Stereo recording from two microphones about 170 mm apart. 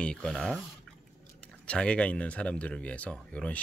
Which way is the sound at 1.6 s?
5° left (ahead or behind).